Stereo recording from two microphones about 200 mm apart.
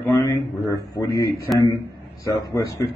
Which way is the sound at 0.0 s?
15° left (ahead or behind).